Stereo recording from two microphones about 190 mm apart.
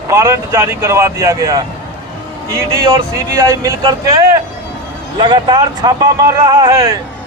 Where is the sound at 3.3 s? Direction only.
15° right (ahead or behind).